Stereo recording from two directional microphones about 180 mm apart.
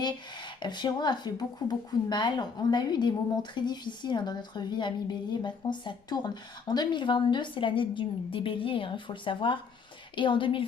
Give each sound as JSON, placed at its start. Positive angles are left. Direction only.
{"t": 0.0, "sound": "speech", "side_deg": 25}